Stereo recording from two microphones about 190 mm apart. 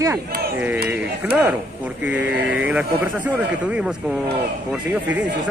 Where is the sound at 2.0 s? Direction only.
5° right (ahead or behind).